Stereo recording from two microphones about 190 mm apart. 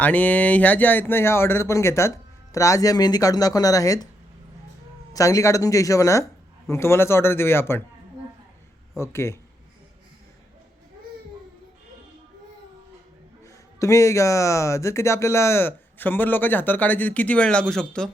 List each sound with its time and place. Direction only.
0.0 s a man's voice: 10° left (ahead or behind)
5.1 s a man's voice: 15° left (ahead or behind)
9.0 s a man's voice: 15° left (ahead or behind)
13.4 s a man's voice: 15° left (ahead or behind)